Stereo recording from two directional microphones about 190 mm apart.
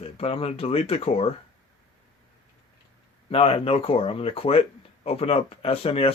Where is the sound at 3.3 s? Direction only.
30° left (ahead or behind).